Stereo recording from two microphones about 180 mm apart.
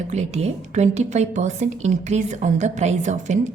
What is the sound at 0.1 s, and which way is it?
A woman's voice, 40° right (ahead or behind).